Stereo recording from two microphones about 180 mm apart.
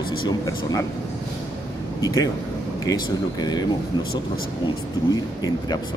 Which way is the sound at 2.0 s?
20° left (ahead or behind).